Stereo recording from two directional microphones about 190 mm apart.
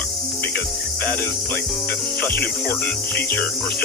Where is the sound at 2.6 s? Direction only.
10° left (ahead or behind).